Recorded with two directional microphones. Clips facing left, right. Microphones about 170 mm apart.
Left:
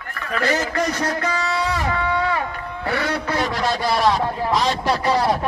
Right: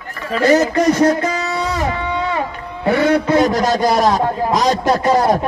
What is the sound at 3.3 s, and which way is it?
Speech, 45° right (ahead or behind).